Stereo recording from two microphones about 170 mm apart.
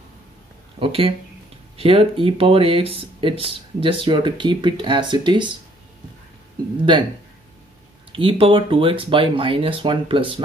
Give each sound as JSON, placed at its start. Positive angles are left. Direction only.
{"t": 0.7, "sound": "a sound", "side_deg": -35}
{"t": 1.8, "sound": "speech", "side_deg": -35}
{"t": 8.1, "sound": "speech", "side_deg": -30}